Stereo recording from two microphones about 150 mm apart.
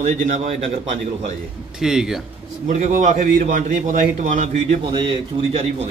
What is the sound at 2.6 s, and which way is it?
A man's voice, 60° right (ahead or behind).